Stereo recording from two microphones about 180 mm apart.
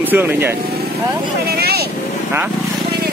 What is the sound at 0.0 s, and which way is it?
Speech, 10° right (ahead or behind).